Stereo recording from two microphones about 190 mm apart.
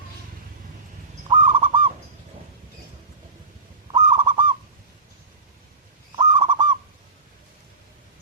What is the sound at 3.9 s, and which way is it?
Owl, 25° right (ahead or behind).